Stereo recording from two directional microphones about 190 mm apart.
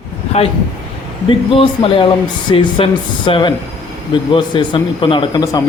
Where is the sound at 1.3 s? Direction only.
25° left (ahead or behind).